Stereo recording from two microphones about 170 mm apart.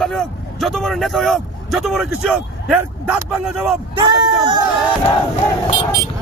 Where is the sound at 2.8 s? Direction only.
15° right (ahead or behind).